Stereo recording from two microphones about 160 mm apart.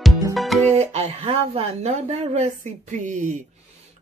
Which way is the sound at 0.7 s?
40° right (ahead or behind).